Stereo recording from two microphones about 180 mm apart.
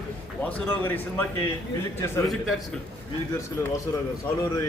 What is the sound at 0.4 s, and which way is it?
Speech, 10° left (ahead or behind).